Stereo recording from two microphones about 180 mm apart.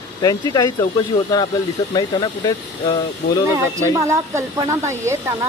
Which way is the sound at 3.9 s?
15° right (ahead or behind).